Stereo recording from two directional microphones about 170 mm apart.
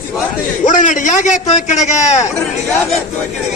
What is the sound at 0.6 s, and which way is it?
A man's voice, 45° left (ahead or behind).